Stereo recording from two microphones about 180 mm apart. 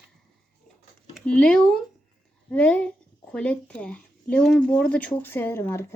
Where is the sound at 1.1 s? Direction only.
5° left (ahead or behind).